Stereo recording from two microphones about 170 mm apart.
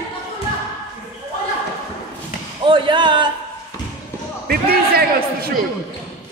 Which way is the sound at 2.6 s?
30° right (ahead or behind).